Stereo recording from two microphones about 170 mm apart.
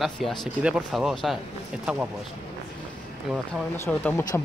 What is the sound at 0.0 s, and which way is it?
Speech, centre (ahead or behind).